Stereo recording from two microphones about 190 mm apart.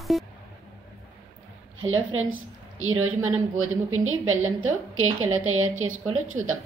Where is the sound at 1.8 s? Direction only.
90° right.